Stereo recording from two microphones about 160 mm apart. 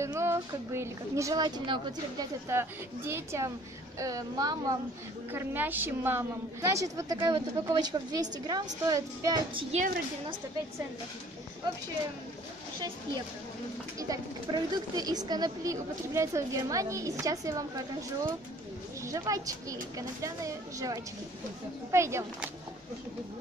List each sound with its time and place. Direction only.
0.0 s speech: 15° right (ahead or behind)
2.5 s speech: 15° right (ahead or behind)
9.5 s a woman's voice: 35° right (ahead or behind)
13.9 s speech: 20° right (ahead or behind)